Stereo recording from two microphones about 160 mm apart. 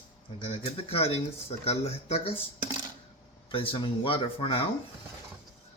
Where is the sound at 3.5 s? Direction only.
35° left (ahead or behind).